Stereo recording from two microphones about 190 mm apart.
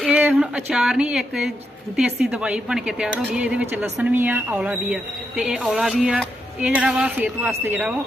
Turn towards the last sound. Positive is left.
turn(degrees=-10)  # may be behind; listen again after turning